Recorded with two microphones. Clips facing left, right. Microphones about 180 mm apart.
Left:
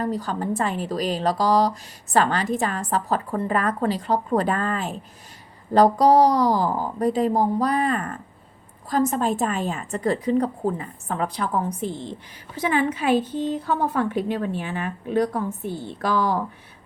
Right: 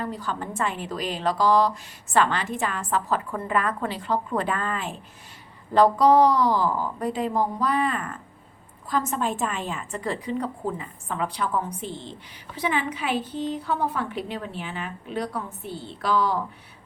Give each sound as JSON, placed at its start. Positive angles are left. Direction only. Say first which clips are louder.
{"t": 0.0, "sound": "a woman's voice", "louder": "left 5 dB", "side_deg": 40}